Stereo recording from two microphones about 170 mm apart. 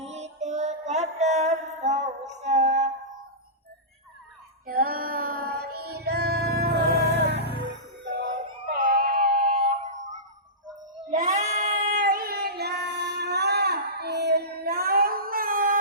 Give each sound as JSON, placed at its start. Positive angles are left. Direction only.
{"t": 0.0, "sound": "music", "side_deg": -40}
{"t": 4.6, "sound": "music", "side_deg": -60}
{"t": 7.2, "sound": "music", "side_deg": -80}
{"t": 8.0, "sound": "a sound", "side_deg": -25}
{"t": 8.7, "sound": "music", "side_deg": -60}
{"t": 11.1, "sound": "child singing", "side_deg": -50}